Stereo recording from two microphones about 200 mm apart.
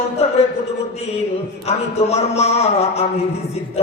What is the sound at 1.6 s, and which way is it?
Music, 30° left (ahead or behind).